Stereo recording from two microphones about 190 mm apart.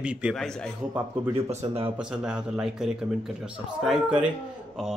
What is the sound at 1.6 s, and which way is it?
Speech, 30° right (ahead or behind).